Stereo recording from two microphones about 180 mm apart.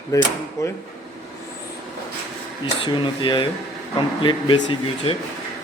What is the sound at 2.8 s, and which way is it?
Speech, 25° left (ahead or behind).